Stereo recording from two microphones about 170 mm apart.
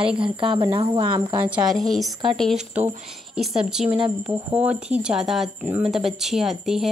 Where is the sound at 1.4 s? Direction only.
5° right (ahead or behind).